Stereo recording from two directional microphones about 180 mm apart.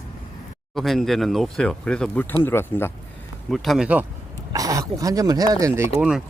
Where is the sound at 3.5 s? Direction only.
Centre (ahead or behind).